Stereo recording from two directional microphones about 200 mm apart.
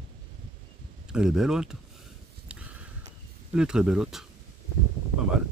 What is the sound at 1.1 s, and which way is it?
Speech, 5° right (ahead or behind).